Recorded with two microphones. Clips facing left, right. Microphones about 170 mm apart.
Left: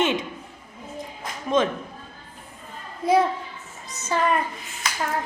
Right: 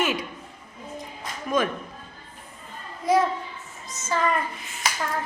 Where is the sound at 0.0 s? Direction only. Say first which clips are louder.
Left 3 dB; 25° left (ahead or behind).